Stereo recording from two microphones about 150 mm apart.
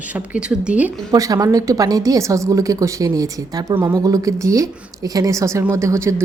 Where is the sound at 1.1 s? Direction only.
25° right (ahead or behind).